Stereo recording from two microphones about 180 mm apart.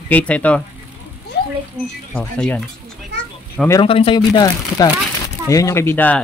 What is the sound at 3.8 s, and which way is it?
Speech, 30° left (ahead or behind).